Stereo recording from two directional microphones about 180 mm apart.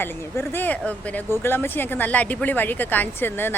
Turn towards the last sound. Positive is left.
turn(degrees=10)  # may be behind; listen again after turning